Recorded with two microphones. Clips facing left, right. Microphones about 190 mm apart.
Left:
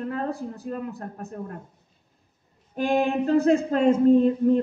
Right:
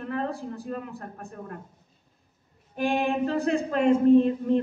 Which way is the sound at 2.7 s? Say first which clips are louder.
Left 3 dB; 40° left (ahead or behind).